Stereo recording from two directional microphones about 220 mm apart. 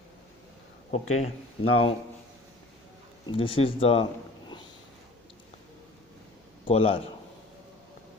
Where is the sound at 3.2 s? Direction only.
25° left (ahead or behind).